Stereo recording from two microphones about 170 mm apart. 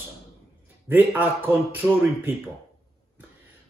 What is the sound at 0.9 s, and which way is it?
Speech, 10° right (ahead or behind).